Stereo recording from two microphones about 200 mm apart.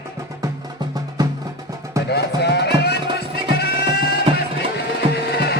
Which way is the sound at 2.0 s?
55° left (ahead or behind).